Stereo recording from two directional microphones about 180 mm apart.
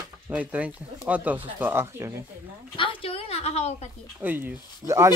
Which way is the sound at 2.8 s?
30° left (ahead or behind).